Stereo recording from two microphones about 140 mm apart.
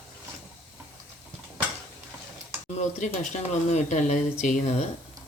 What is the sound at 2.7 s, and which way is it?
Speech, 55° left (ahead or behind).